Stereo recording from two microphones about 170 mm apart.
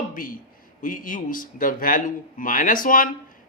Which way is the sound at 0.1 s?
55° left (ahead or behind).